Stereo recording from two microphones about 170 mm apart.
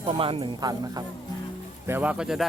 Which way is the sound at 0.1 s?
30° right (ahead or behind).